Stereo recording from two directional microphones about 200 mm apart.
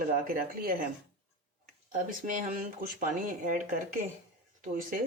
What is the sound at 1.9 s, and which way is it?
Speech, 40° right (ahead or behind).